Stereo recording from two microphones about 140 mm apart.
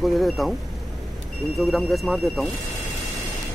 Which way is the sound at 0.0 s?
Centre (ahead or behind).